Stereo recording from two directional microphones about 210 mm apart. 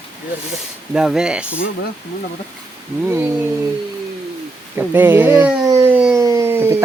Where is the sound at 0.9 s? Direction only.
5° right (ahead or behind).